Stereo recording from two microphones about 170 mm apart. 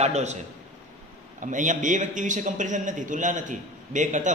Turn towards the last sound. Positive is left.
turn(degrees=-45)  # may be behind; listen again after turning